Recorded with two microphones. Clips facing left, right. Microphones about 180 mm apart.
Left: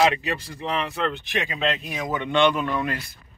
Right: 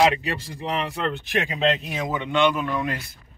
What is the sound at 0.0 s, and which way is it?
Speech, 25° right (ahead or behind).